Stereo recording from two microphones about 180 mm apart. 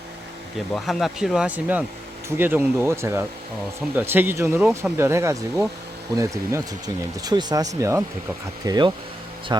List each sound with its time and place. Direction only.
0.7 s speech: centre (ahead or behind); by 9.7 s 20° right (ahead or behind)